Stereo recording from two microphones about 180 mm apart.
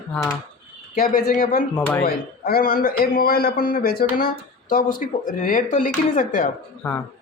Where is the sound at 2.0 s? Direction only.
55° left (ahead or behind).